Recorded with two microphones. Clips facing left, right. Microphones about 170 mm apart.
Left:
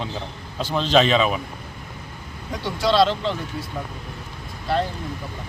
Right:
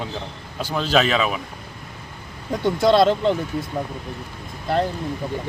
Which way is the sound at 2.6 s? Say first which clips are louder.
Right 3 dB; 50° right (ahead or behind).